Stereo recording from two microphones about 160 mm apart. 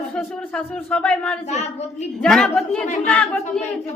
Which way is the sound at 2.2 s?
5° left (ahead or behind).